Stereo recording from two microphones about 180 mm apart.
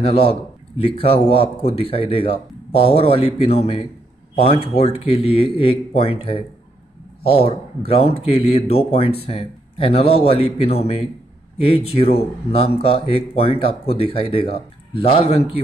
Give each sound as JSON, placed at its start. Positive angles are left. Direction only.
{"t": 0.0, "sound": "speech", "side_deg": 35}